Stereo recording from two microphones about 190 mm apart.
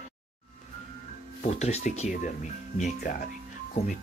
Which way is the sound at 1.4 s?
35° left (ahead or behind).